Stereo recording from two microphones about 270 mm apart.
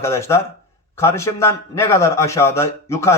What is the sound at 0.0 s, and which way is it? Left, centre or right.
Speech, centre.